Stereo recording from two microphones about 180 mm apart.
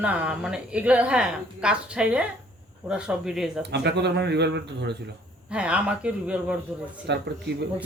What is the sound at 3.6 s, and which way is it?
Speech, 70° right (ahead or behind).